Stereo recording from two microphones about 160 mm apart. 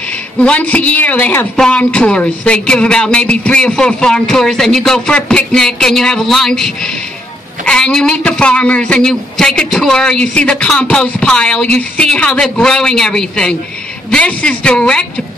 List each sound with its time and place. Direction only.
0.4 s a woman's voice: 10° left (ahead or behind)